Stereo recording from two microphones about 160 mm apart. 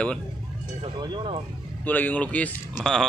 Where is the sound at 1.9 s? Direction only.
10° left (ahead or behind).